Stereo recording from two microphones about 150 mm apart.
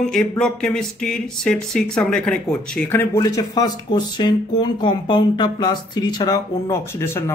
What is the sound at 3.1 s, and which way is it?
Speech, 20° left (ahead or behind).